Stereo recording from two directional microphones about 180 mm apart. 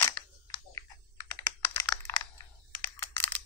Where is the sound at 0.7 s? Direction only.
15° left (ahead or behind).